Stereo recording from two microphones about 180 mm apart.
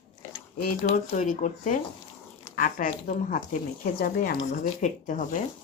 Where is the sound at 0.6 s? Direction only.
50° left (ahead or behind).